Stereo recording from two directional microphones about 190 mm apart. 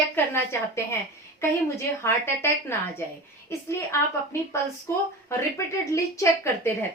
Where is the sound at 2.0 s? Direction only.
15° left (ahead or behind).